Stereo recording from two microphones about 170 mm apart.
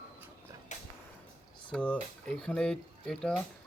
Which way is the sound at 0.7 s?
45° left (ahead or behind).